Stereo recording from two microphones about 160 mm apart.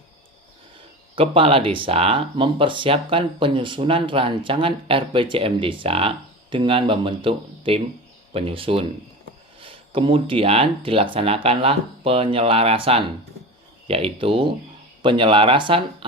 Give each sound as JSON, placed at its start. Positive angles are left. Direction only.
{"t": 1.1, "sound": "speech", "side_deg": -35}